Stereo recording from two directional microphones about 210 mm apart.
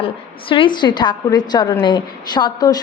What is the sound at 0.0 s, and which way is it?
A woman's voice, 25° left (ahead or behind).